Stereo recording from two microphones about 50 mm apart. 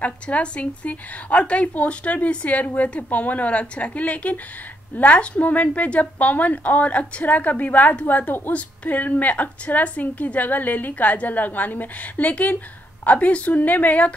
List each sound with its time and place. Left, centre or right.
0.0 s a woman's voice: left